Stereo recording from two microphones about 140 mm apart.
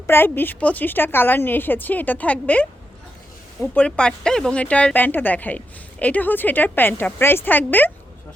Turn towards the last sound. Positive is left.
turn(degrees=15)  # may be behind; listen again after turning